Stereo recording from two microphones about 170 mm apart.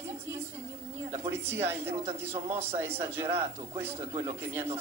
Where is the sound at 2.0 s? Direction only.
40° right (ahead or behind).